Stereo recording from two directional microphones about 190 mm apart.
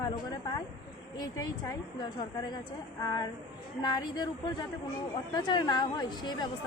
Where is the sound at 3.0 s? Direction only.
20° left (ahead or behind).